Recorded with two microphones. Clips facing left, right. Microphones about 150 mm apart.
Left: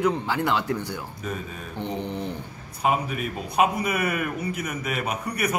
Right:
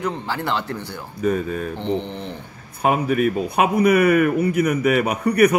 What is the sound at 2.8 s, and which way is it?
Speech, 55° right (ahead or behind).